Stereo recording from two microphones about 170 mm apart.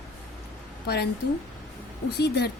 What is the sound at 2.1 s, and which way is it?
Speech, 70° left (ahead or behind).